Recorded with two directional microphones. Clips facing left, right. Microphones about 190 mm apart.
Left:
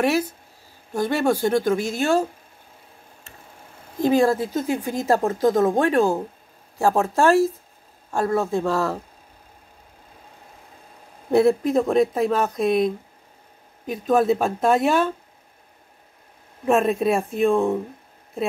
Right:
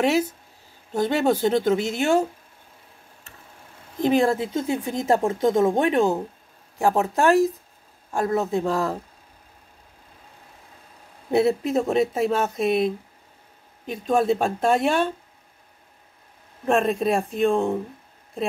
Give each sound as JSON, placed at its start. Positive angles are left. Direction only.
{"t": 0.0, "sound": "speech", "side_deg": -20}
{"t": 4.0, "sound": "speech", "side_deg": -20}
{"t": 11.7, "sound": "speech", "side_deg": -5}
{"t": 16.6, "sound": "speech", "side_deg": 0}